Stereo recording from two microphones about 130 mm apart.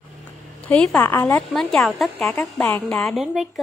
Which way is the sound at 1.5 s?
5° left (ahead or behind).